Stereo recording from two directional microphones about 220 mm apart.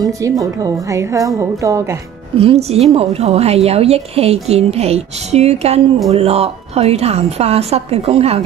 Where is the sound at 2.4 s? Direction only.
25° right (ahead or behind).